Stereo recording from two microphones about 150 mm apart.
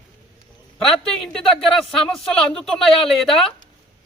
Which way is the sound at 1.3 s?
Centre (ahead or behind).